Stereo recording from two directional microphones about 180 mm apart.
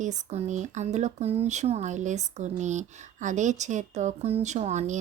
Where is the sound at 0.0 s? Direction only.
40° right (ahead or behind).